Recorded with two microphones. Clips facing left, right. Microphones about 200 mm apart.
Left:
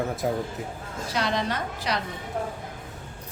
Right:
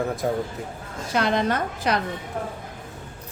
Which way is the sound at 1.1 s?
55° right (ahead or behind).